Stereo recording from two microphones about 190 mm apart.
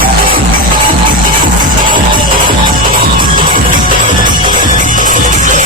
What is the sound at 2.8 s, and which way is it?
Music, 45° right (ahead or behind).